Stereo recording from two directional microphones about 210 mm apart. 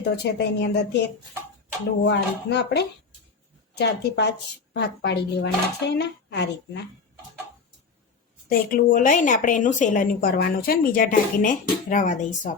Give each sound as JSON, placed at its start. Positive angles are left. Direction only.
{"t": 0.0, "sound": "a woman's voice", "side_deg": 50}
{"t": 8.4, "sound": "a woman's voice", "side_deg": 40}